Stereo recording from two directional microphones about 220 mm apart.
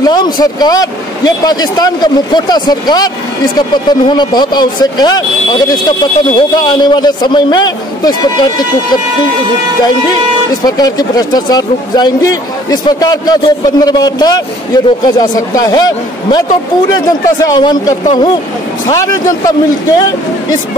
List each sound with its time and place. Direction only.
0.0 s speech: 20° left (ahead or behind)
4.1 s speech: 20° left (ahead or behind)
10.6 s speech: 15° left (ahead or behind)
17.4 s speech: 15° left (ahead or behind)